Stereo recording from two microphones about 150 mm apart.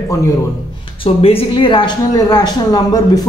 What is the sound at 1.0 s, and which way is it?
Speech, 35° left (ahead or behind).